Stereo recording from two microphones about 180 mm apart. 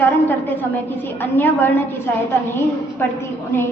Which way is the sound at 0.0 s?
10° left (ahead or behind).